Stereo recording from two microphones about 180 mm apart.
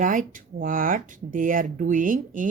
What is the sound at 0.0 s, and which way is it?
Speech, 45° right (ahead or behind).